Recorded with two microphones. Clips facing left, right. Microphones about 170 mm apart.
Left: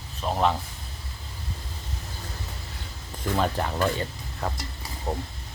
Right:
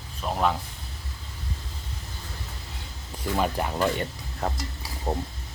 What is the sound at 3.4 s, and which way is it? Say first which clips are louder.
Speech: even; 10° right (ahead or behind).